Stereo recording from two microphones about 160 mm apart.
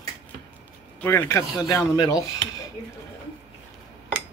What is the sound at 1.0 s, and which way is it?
Speech, 15° left (ahead or behind).